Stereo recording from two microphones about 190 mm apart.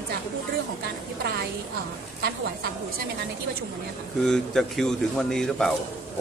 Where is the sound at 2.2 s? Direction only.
55° right (ahead or behind).